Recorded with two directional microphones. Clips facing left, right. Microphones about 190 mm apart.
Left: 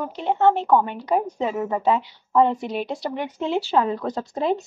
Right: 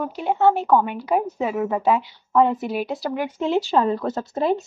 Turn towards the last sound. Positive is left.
turn(degrees=20)  # may be behind; listen again after turning